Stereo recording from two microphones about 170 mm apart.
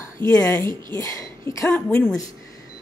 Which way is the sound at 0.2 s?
15° left (ahead or behind).